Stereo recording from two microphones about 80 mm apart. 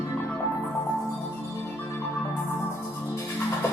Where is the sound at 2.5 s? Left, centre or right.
Left.